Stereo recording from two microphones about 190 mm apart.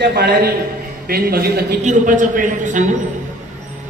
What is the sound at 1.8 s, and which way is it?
A man's voice, 40° right (ahead or behind).